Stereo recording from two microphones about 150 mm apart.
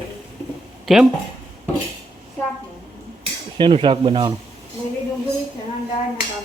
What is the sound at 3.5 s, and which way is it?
Speech, 35° right (ahead or behind).